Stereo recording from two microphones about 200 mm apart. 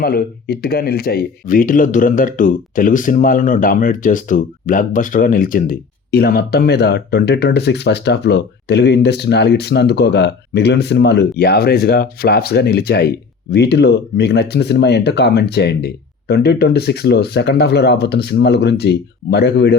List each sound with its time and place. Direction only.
0.0 s speech: 50° left (ahead or behind)